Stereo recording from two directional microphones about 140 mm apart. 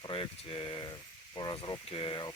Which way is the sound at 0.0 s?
40° left (ahead or behind).